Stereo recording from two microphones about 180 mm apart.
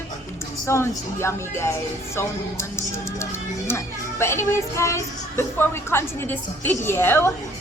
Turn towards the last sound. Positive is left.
turn(degrees=15)  # may be behind; listen again after turning